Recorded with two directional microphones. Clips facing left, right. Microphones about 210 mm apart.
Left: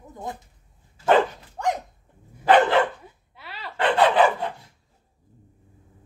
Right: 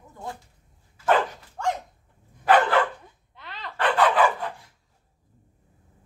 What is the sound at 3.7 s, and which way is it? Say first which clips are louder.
Dog: left 2 dB; 25° left (ahead or behind).